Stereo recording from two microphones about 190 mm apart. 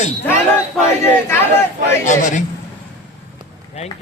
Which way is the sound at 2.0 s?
40° left (ahead or behind).